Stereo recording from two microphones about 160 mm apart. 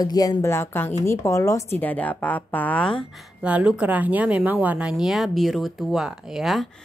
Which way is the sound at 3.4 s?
5° right (ahead or behind).